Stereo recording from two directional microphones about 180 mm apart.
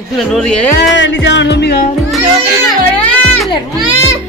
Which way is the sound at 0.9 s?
85° left.